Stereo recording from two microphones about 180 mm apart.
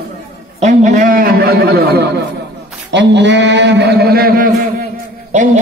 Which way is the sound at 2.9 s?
75° right (ahead or behind).